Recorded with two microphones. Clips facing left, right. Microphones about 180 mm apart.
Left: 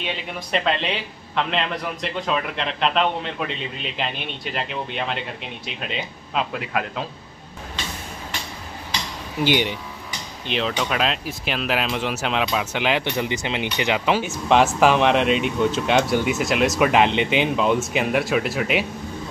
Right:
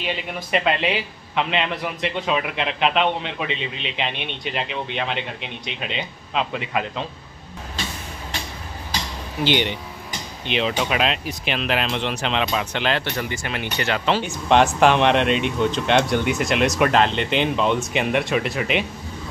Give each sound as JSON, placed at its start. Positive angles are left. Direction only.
{"t": 0.0, "sound": "speech", "side_deg": -5}
{"t": 9.4, "sound": "speech", "side_deg": 5}